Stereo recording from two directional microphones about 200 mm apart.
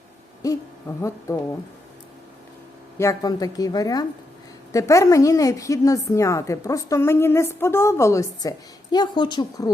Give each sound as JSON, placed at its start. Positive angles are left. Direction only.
{"t": 0.4, "sound": "hoot", "side_deg": 15}
{"t": 3.0, "sound": "a woman's voice", "side_deg": 15}